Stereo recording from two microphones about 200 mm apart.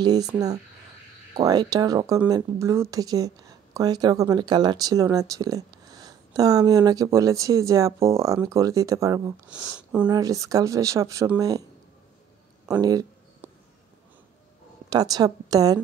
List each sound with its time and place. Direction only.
0.0 s a woman's voice: 20° right (ahead or behind)
9.5 s speech: 5° right (ahead or behind)
10.0 s speech: 20° right (ahead or behind)
12.6 s a sound: 20° right (ahead or behind)
14.9 s a woman's voice: 20° right (ahead or behind)